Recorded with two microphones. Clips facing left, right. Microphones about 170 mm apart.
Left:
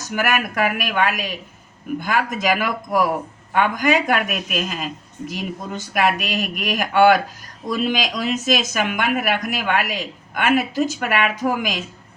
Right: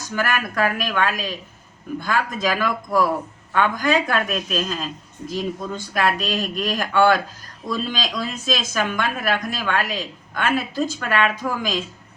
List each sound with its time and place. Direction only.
0.1 s speech: 15° left (ahead or behind)
5.9 s speech: 15° left (ahead or behind)